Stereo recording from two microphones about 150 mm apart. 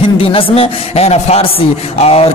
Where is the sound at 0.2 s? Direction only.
35° left (ahead or behind).